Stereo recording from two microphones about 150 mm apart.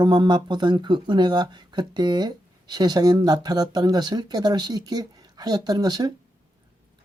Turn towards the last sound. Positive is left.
turn(degrees=-25)  # may be behind; listen again after turning